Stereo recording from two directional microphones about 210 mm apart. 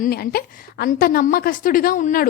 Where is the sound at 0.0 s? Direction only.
45° left (ahead or behind).